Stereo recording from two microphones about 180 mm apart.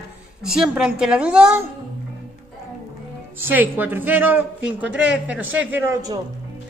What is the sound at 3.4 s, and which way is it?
A man's voice, 10° right (ahead or behind).